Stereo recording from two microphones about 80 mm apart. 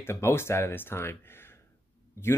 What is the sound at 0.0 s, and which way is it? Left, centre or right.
Speech, left.